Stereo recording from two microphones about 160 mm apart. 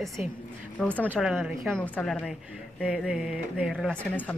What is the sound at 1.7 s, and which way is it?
A woman's voice, 10° left (ahead or behind).